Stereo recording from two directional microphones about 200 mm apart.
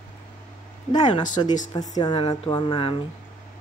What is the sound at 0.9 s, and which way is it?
Speech, 20° left (ahead or behind).